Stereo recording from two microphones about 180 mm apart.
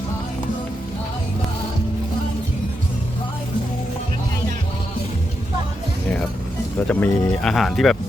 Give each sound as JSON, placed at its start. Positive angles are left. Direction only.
{"t": 6.7, "sound": "speech", "side_deg": 10}
{"t": 7.5, "sound": "speech", "side_deg": 0}